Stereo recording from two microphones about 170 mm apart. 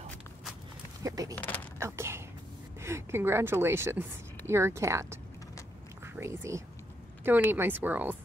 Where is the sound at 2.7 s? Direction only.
15° right (ahead or behind).